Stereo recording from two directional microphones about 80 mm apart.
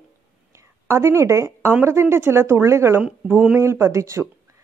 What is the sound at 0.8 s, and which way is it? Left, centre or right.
A woman's voice, right.